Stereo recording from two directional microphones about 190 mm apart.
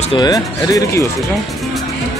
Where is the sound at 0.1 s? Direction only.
20° left (ahead or behind).